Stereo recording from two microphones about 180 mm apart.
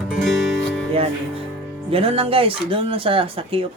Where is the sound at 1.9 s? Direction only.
30° right (ahead or behind).